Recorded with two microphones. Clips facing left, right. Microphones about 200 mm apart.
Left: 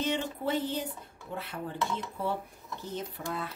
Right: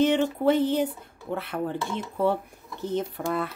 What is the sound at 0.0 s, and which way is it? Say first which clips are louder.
A woman's voice: right 10 dB; 60° right (ahead or behind).